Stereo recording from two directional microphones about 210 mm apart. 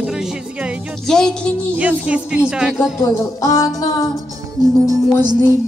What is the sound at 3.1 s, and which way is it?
Music, 15° left (ahead or behind).